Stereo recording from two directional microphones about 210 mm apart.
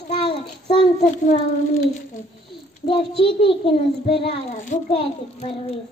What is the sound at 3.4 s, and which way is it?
A child's voice, 25° left (ahead or behind).